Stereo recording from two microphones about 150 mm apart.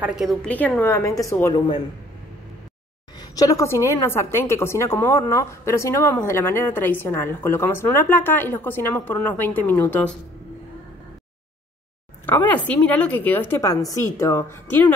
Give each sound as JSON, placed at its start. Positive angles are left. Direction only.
{"t": 0.0, "sound": "a woman's voice", "side_deg": -5}
{"t": 3.2, "sound": "a woman's voice", "side_deg": 25}
{"t": 12.6, "sound": "a woman's voice", "side_deg": 10}
{"t": 13.6, "sound": "a woman's voice", "side_deg": 25}